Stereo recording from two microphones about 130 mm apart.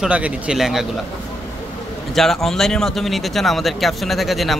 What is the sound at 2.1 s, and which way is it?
Speech, centre (ahead or behind).